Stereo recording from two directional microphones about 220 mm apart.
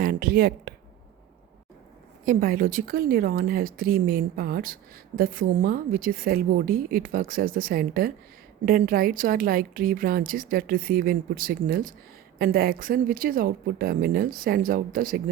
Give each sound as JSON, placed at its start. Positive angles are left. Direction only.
{"t": 0.0, "sound": "speech", "side_deg": -40}
{"t": 2.2, "sound": "speech", "side_deg": -40}